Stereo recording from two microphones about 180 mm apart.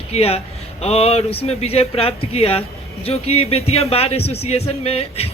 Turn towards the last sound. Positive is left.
turn(degrees=35)  # may be behind; listen again after turning